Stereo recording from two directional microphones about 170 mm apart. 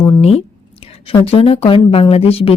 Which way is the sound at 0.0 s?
35° left (ahead or behind).